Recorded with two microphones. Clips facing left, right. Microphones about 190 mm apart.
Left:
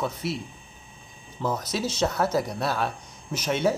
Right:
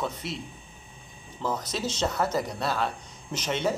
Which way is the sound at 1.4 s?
Centre (ahead or behind).